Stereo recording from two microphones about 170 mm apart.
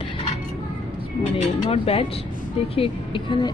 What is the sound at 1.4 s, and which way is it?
Speech, 35° left (ahead or behind).